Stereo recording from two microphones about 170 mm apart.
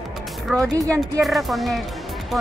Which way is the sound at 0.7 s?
20° right (ahead or behind).